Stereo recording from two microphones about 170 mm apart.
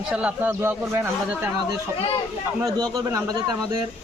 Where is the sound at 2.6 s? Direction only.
20° right (ahead or behind).